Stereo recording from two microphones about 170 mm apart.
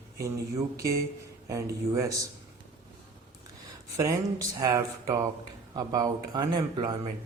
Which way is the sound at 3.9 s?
20° right (ahead or behind).